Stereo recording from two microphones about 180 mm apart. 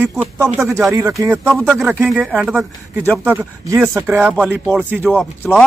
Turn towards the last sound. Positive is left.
turn(degrees=5)  # may be behind; listen again after turning